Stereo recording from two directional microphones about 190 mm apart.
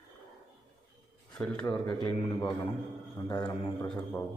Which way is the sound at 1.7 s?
20° left (ahead or behind).